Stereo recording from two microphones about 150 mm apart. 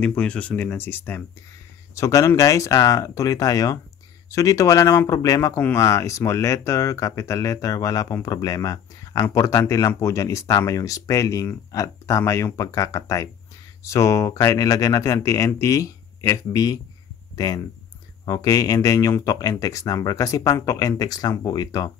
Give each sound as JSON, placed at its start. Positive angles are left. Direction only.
{"t": 0.0, "sound": "speech", "side_deg": 10}
{"t": 18.2, "sound": "speech", "side_deg": 25}